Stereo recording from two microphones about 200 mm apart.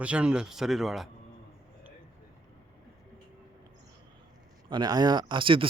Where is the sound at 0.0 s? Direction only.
5° right (ahead or behind).